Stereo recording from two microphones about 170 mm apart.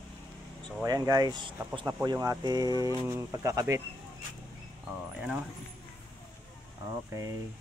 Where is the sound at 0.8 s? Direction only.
20° right (ahead or behind).